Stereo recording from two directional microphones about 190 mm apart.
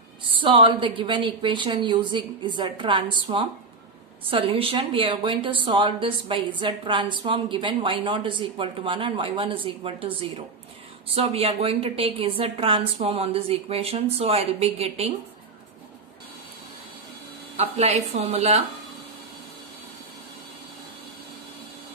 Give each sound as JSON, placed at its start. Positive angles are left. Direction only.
{"t": 0.2, "sound": "a woman's voice", "side_deg": -25}
{"t": 17.6, "sound": "a woman's voice", "side_deg": -35}